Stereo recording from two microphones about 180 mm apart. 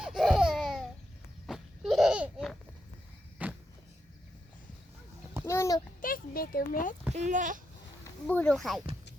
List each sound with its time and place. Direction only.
0.0 s laughter: centre (ahead or behind)
3.4 s walk: 10° right (ahead or behind)
5.5 s a sound: 15° left (ahead or behind)
6.0 s speech: 50° left (ahead or behind)
7.1 s speech: 40° right (ahead or behind)
8.3 s speech: 5° left (ahead or behind)